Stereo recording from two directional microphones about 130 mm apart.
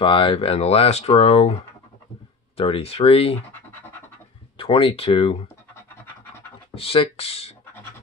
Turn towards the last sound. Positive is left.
turn(degrees=50)  # may be behind; listen again after turning